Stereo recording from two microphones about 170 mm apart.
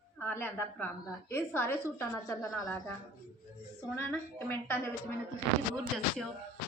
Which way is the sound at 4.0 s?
10° left (ahead or behind).